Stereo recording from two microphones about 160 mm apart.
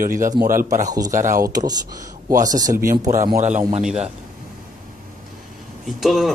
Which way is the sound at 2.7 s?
60° right (ahead or behind).